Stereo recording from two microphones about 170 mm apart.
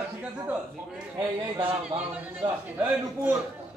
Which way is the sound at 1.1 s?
30° right (ahead or behind).